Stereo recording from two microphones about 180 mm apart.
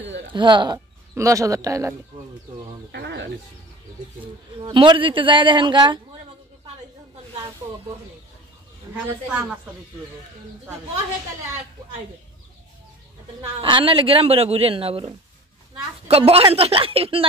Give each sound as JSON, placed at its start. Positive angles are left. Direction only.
{"t": 0.3, "sound": "speech", "side_deg": -25}
{"t": 2.9, "sound": "speech", "side_deg": -70}
{"t": 4.6, "sound": "speech", "side_deg": -30}
{"t": 9.3, "sound": "speech", "side_deg": -5}
{"t": 13.6, "sound": "speech", "side_deg": -30}